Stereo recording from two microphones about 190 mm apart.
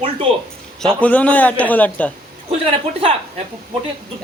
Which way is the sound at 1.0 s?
5° left (ahead or behind).